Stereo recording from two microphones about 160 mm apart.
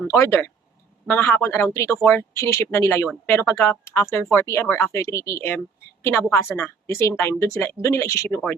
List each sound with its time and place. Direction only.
0.0 s speech: 15° left (ahead or behind)